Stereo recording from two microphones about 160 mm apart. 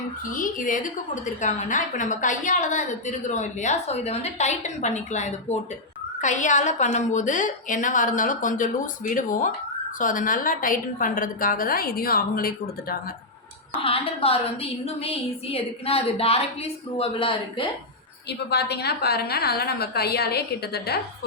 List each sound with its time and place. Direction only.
0.3 s a woman's voice: 55° left (ahead or behind)
13.7 s a woman's voice: 35° left (ahead or behind)
18.3 s a woman's voice: 90° left